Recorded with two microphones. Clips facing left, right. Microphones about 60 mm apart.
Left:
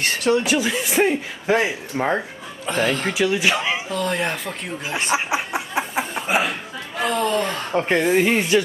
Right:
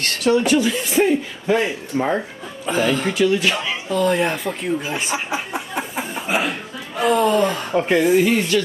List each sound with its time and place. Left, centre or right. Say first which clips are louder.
0.0 s speech: right 2 dB; centre
2.6 s speech: right 2 dB; centre
3.9 s speech: right 9 dB; centre
5.1 s chuckle: left 2 dB; centre
7.0 s speech: right 5 dB; centre
8.2 s speech: even; centre